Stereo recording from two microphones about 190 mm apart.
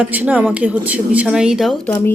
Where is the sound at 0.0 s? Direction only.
5° right (ahead or behind).